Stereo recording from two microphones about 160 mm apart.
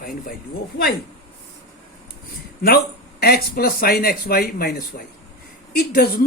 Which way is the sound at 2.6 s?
70° left (ahead or behind).